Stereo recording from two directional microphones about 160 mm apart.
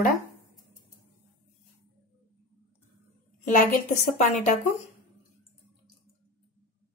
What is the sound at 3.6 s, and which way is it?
Speech, 55° left (ahead or behind).